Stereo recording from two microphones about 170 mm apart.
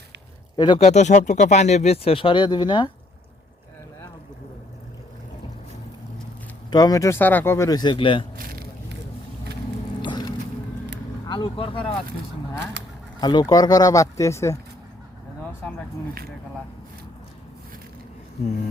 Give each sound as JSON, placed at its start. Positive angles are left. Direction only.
{"t": 0.5, "sound": "speech", "side_deg": 25}
{"t": 0.8, "sound": "speech", "side_deg": 40}
{"t": 6.7, "sound": "speech", "side_deg": 25}
{"t": 8.4, "sound": "squish", "side_deg": -60}
{"t": 10.0, "sound": "vehicle", "side_deg": 25}
{"t": 11.3, "sound": "speech", "side_deg": 30}
{"t": 13.1, "sound": "speech", "side_deg": 25}